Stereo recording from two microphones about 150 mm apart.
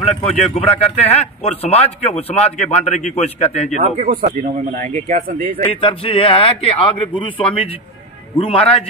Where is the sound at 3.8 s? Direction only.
45° right (ahead or behind).